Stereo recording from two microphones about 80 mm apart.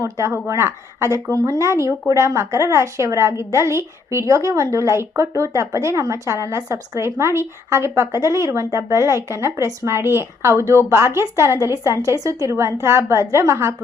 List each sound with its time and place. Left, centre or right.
0.0 s a woman's voice: right